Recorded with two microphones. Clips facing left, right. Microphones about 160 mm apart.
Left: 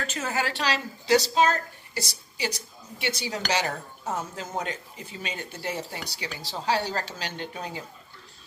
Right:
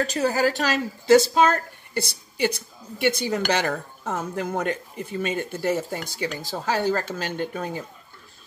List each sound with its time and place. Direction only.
0.0 s speech: 35° right (ahead or behind)